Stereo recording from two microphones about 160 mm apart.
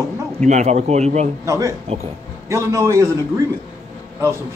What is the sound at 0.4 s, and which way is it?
Speech, 45° right (ahead or behind).